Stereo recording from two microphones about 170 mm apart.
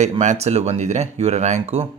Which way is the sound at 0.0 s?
45° right (ahead or behind).